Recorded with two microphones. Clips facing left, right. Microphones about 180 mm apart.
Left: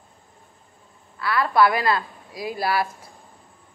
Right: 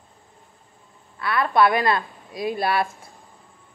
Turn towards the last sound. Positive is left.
turn(degrees=-25)  # may be behind; listen again after turning